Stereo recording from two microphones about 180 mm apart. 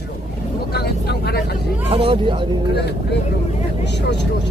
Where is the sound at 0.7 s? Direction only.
60° left (ahead or behind).